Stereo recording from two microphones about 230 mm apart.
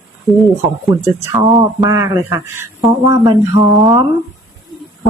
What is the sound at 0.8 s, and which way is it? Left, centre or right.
Speech, centre.